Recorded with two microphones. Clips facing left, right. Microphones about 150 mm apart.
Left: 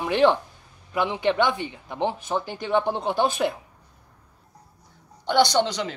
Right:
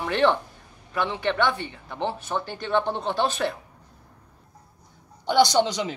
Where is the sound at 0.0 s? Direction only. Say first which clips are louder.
Left 2 dB; 15° left (ahead or behind).